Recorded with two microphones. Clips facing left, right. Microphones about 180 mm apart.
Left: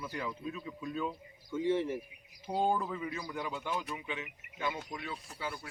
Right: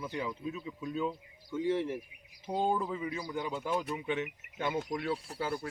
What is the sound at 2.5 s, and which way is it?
Speech, 5° left (ahead or behind).